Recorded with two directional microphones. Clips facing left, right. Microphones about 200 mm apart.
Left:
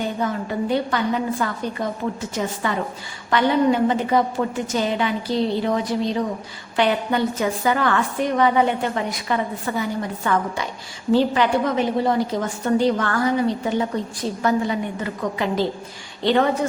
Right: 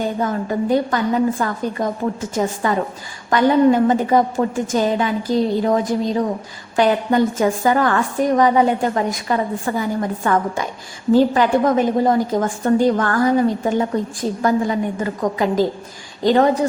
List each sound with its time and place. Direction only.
0.2 s a woman's voice: 45° right (ahead or behind)